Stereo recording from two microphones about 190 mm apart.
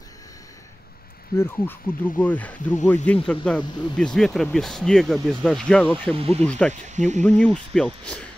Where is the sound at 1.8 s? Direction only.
45° left (ahead or behind).